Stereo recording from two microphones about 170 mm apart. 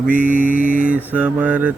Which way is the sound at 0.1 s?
50° right (ahead or behind).